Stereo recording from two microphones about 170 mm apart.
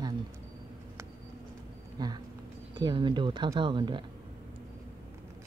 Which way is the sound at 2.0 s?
25° right (ahead or behind).